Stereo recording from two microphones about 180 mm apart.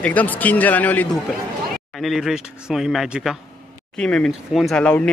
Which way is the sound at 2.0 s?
Centre (ahead or behind).